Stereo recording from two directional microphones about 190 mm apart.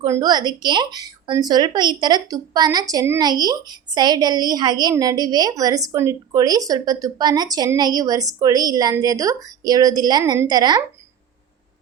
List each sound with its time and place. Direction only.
0.0 s speech: 20° right (ahead or behind)